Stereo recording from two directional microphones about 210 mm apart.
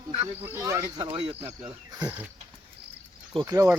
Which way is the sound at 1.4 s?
10° right (ahead or behind).